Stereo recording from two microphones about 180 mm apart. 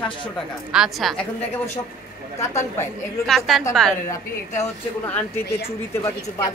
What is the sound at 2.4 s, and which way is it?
Speech, 15° left (ahead or behind).